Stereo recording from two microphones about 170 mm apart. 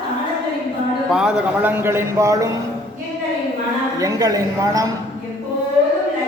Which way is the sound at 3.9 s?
20° right (ahead or behind).